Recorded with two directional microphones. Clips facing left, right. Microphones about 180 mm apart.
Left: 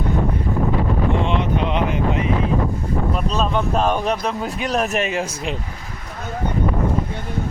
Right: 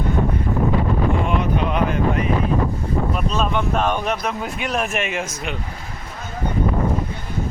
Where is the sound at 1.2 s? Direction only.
25° left (ahead or behind).